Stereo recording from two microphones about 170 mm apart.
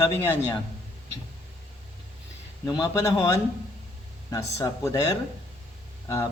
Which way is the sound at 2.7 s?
20° left (ahead or behind).